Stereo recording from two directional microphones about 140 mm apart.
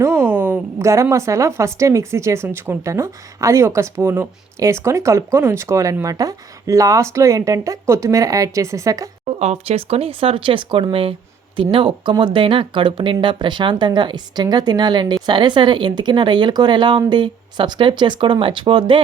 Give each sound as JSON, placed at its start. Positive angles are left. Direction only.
{"t": 0.0, "sound": "a woman's voice", "side_deg": -15}
{"t": 9.2, "sound": "speech", "side_deg": -50}